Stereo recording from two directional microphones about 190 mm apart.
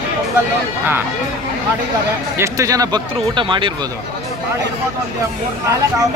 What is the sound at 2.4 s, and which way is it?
Speech, 15° right (ahead or behind).